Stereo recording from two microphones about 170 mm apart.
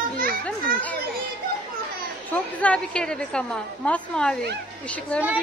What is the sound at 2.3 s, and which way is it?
A woman's voice, 10° left (ahead or behind).